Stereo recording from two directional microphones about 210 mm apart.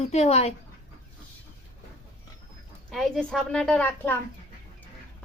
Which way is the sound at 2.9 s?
Centre (ahead or behind).